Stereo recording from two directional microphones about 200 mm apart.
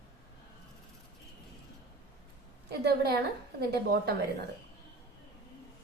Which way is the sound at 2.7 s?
55° right (ahead or behind).